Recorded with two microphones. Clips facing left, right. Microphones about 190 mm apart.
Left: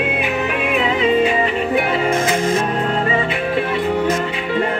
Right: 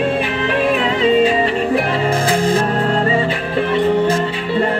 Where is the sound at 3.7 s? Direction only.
10° left (ahead or behind).